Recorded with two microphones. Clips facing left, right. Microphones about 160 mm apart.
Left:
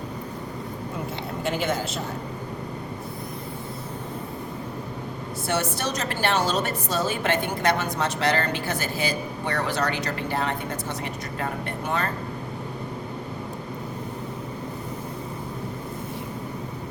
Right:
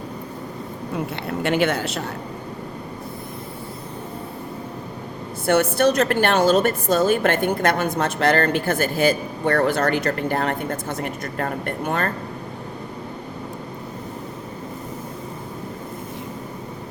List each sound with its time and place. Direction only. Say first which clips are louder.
1.3 s speech: right 6 dB; 75° right (ahead or behind)
5.5 s a woman's voice: right 10 dB; 55° right (ahead or behind)